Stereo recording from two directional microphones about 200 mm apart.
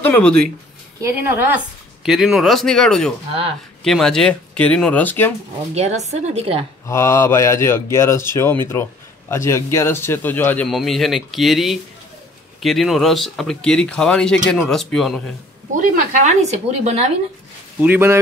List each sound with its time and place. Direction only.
0.0 s a man's voice: 10° left (ahead or behind)
1.0 s a woman's voice: 10° right (ahead or behind); by 5.3 s 10° left (ahead or behind)
5.8 s speech: 35° right (ahead or behind)
6.9 s a man's voice: 15° left (ahead or behind)
15.7 s speech: 35° right (ahead or behind)
17.7 s a woman's voice: 10° right (ahead or behind)